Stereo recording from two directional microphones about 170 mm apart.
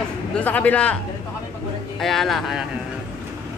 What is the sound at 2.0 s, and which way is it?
Speech, centre (ahead or behind).